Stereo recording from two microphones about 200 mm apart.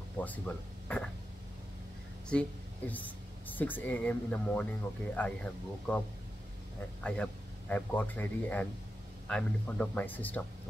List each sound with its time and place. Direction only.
0.2 s speech: 10° left (ahead or behind)
2.3 s speech: 5° left (ahead or behind)